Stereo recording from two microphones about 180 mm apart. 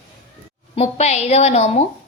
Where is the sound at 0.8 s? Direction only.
40° left (ahead or behind).